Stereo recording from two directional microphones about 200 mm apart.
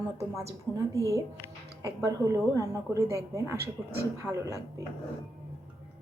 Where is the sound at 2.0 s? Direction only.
15° right (ahead or behind).